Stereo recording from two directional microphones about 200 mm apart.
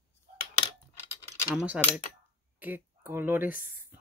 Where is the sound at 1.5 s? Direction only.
5° right (ahead or behind).